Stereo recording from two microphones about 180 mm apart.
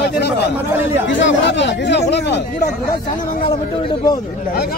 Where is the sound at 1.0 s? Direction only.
80° left.